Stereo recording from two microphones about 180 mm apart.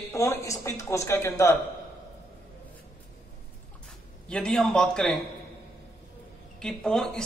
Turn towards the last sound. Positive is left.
turn(degrees=5)  # may be behind; listen again after turning